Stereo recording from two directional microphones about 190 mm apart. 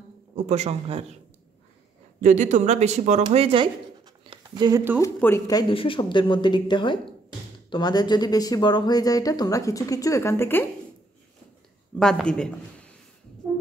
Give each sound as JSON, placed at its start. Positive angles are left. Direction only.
{"t": 0.5, "sound": "speech", "side_deg": -35}
{"t": 2.1, "sound": "speech", "side_deg": -40}
{"t": 5.0, "sound": "speech", "side_deg": 15}
{"t": 12.0, "sound": "speech", "side_deg": 5}